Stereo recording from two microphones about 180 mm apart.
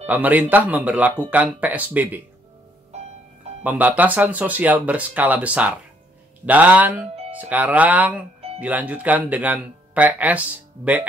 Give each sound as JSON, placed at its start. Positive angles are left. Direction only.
{"t": 0.0, "sound": "speech", "side_deg": -10}
{"t": 3.6, "sound": "speech", "side_deg": -10}